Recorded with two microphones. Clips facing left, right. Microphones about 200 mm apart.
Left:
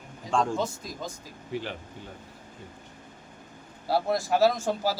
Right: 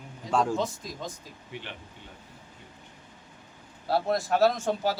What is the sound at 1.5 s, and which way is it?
Speech, 40° left (ahead or behind).